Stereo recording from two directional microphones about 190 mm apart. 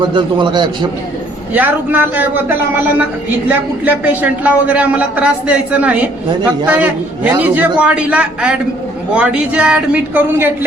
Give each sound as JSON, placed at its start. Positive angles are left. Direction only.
{"t": 0.0, "sound": "a man's voice", "side_deg": -25}
{"t": 1.5, "sound": "a man's voice", "side_deg": -10}